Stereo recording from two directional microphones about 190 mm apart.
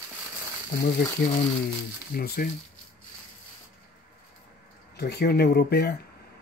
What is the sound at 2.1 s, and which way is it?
Speech, 50° left (ahead or behind).